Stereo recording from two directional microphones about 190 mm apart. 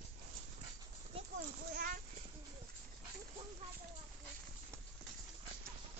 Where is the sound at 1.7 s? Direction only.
55° right (ahead or behind).